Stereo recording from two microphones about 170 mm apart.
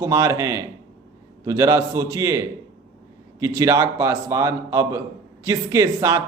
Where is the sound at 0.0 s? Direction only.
20° right (ahead or behind).